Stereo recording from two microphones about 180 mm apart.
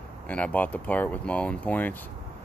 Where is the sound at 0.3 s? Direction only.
10° left (ahead or behind).